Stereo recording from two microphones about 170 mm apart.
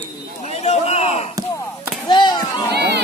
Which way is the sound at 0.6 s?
40° left (ahead or behind).